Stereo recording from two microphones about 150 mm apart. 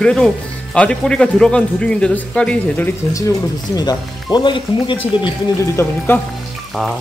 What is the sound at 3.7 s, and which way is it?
Speech, 30° left (ahead or behind).